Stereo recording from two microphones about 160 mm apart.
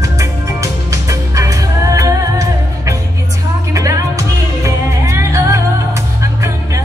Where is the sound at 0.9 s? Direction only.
20° right (ahead or behind).